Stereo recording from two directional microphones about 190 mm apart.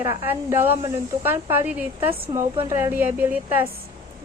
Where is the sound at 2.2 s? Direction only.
30° right (ahead or behind).